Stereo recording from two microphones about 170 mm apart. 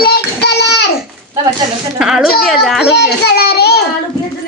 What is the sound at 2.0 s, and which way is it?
Speech, centre (ahead or behind).